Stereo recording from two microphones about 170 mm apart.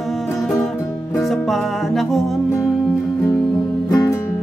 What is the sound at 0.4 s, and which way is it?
Music, 5° left (ahead or behind).